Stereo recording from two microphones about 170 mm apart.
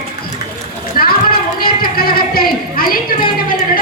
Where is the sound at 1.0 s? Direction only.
60° left (ahead or behind).